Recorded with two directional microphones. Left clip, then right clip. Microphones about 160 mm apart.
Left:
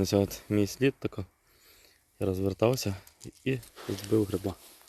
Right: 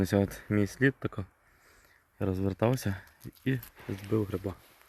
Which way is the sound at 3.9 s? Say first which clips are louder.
Left 4 dB; 35° left (ahead or behind).